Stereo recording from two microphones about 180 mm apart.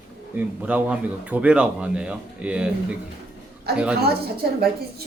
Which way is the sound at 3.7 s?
60° right (ahead or behind).